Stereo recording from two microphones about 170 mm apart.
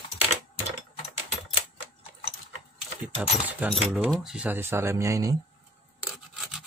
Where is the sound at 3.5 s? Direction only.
10° right (ahead or behind).